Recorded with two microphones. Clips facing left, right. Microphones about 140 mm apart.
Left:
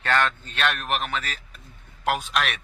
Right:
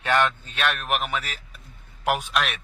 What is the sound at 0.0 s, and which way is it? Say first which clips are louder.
Speech: right 1 dB; 15° right (ahead or behind).